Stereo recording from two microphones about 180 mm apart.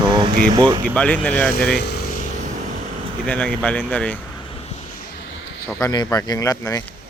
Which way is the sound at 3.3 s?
5° left (ahead or behind).